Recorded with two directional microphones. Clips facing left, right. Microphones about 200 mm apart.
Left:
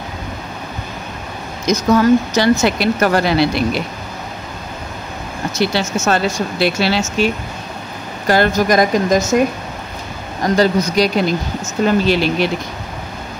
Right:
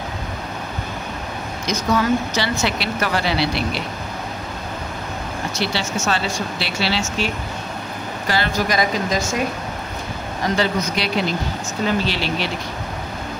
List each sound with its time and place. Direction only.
1.7 s speech: 45° left (ahead or behind)
5.6 s speech: 45° left (ahead or behind)
8.3 s speech: 45° left (ahead or behind)
10.4 s speech: 40° left (ahead or behind)